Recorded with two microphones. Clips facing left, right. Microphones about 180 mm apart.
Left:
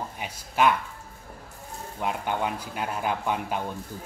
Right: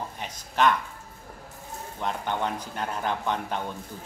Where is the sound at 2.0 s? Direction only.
10° left (ahead or behind).